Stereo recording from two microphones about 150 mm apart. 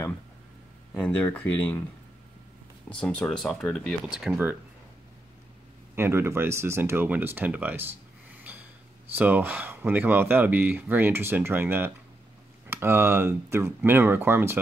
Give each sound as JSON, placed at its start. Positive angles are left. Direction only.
{"t": 1.0, "sound": "speech", "side_deg": 10}
{"t": 3.0, "sound": "speech", "side_deg": 5}
{"t": 5.9, "sound": "speech", "side_deg": -15}
{"t": 9.1, "sound": "speech", "side_deg": -10}